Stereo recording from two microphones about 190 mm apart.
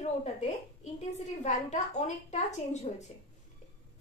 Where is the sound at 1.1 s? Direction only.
35° left (ahead or behind).